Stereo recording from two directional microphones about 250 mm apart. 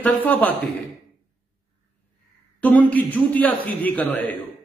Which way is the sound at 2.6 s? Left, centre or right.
Centre.